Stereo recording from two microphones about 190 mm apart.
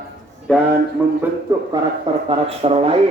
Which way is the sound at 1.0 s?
10° right (ahead or behind).